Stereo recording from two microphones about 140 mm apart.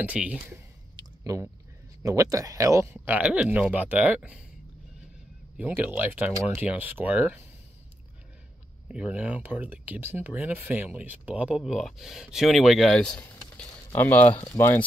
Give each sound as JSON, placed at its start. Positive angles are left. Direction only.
{"t": 0.0, "sound": "speech", "side_deg": -10}
{"t": 0.9, "sound": "a sound", "side_deg": -25}
{"t": 2.0, "sound": "speech", "side_deg": -25}
{"t": 5.6, "sound": "speech", "side_deg": -10}
{"t": 8.8, "sound": "speech", "side_deg": -10}